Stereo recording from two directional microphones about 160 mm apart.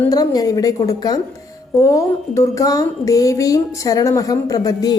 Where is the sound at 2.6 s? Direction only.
20° left (ahead or behind).